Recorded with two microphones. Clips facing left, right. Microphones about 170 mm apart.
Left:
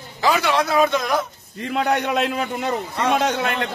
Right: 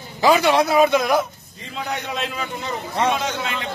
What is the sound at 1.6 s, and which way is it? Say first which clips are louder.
A man's voice: left 8 dB; 65° left (ahead or behind).